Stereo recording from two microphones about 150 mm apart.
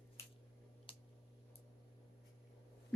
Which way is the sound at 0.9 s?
35° left (ahead or behind).